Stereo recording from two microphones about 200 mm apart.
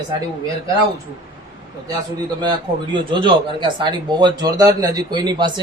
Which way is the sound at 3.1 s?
25° right (ahead or behind).